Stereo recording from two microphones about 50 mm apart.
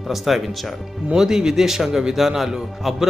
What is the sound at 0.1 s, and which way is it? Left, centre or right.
A man's voice, centre.